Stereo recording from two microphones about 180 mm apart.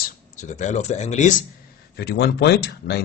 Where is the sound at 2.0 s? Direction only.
60° left (ahead or behind).